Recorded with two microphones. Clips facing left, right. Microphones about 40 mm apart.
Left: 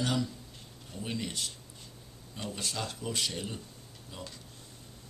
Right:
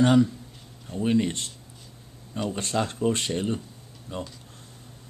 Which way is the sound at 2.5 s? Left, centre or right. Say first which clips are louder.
Right 8 dB; right.